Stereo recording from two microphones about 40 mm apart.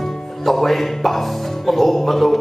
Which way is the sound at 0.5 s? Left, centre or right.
Centre.